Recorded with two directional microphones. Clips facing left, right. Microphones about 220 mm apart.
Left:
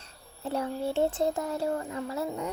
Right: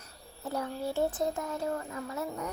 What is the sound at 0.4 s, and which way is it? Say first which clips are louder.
Speech: left 3 dB; 25° left (ahead or behind).